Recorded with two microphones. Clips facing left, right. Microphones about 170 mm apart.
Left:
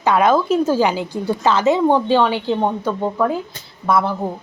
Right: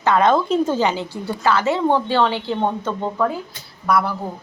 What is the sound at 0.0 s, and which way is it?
A woman's voice, 10° left (ahead or behind).